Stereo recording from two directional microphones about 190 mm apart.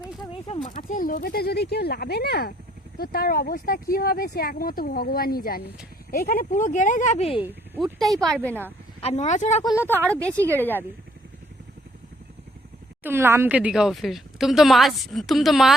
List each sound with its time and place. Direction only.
0.4 s speech: 35° left (ahead or behind)
7.4 s speech: 10° right (ahead or behind)
7.9 s speech: centre (ahead or behind)
9.0 s speech: 35° left (ahead or behind)
9.9 s speech: 10° right (ahead or behind)
10.2 s a woman's voice: 5° left (ahead or behind)
13.0 s speech: 10° right (ahead or behind)